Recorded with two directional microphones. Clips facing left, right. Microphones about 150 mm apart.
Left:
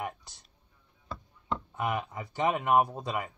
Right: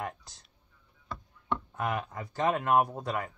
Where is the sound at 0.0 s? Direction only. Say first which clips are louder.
Even; 10° left (ahead or behind).